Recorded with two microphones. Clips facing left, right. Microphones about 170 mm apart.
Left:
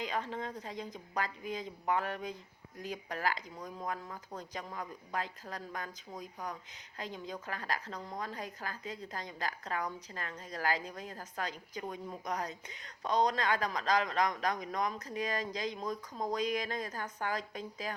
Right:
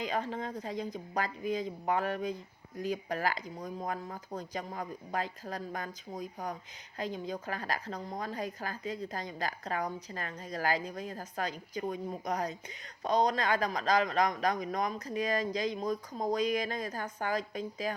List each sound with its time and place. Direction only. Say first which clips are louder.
0.0 s speech: right 3 dB; 40° right (ahead or behind)